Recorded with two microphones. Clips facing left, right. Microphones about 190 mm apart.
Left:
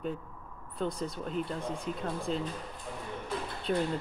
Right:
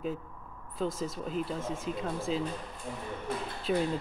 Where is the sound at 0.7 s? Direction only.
Centre (ahead or behind).